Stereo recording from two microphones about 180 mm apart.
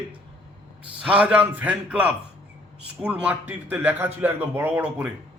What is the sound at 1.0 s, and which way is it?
A man's voice, 5° right (ahead or behind).